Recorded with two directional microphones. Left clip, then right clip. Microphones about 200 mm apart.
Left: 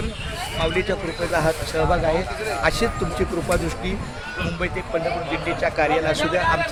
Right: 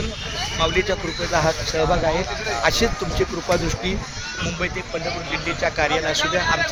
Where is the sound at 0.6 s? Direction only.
20° right (ahead or behind).